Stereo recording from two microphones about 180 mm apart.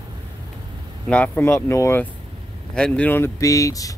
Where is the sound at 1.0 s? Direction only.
5° left (ahead or behind).